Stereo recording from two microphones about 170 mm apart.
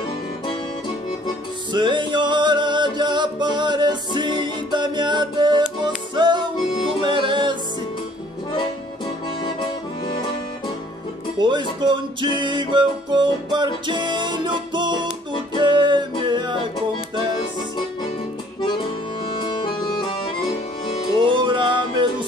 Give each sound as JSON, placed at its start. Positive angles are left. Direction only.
{"t": 1.7, "sound": "music", "side_deg": -30}
{"t": 8.5, "sound": "accordion", "side_deg": 25}
{"t": 11.3, "sound": "music", "side_deg": -25}
{"t": 19.2, "sound": "music", "side_deg": 25}
{"t": 21.2, "sound": "music", "side_deg": -30}